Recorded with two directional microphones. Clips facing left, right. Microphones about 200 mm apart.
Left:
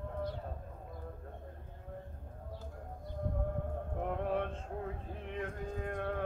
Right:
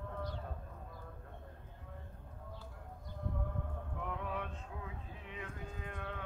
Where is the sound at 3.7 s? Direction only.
45° left (ahead or behind).